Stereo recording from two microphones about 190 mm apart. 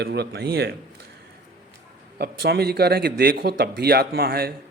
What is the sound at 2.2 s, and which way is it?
Speech, 60° right (ahead or behind).